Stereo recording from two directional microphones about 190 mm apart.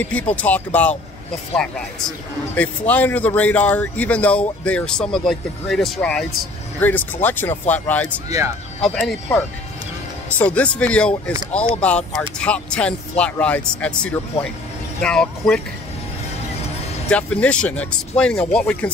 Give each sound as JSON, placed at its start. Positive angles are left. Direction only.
{"t": 0.0, "sound": "a man's voice", "side_deg": 10}
{"t": 10.4, "sound": "a man's voice", "side_deg": 5}
{"t": 17.1, "sound": "speech", "side_deg": 5}